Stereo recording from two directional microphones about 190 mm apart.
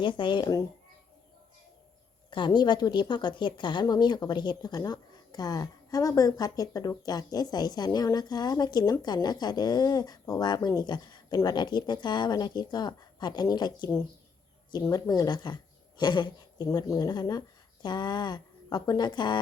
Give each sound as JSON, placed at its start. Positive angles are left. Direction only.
{"t": 0.0, "sound": "speech", "side_deg": 25}
{"t": 2.3, "sound": "a woman's voice", "side_deg": 25}